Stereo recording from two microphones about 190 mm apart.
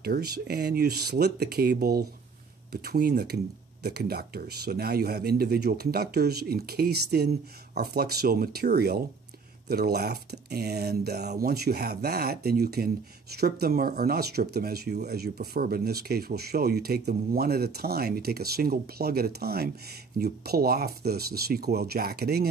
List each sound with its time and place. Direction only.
0.0 s speech: 55° right (ahead or behind)